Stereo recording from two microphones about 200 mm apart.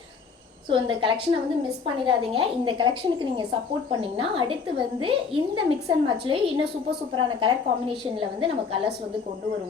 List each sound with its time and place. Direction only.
0.7 s a woman's voice: 25° right (ahead or behind)